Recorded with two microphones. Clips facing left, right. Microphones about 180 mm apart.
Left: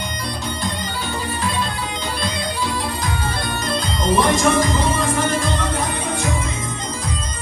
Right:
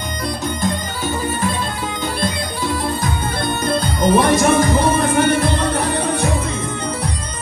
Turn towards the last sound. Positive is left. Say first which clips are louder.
# right 5 dB
turn(degrees=-65)  # may be behind; listen again after turning